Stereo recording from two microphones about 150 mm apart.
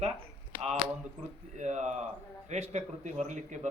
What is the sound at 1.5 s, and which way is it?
A man's voice, 50° right (ahead or behind).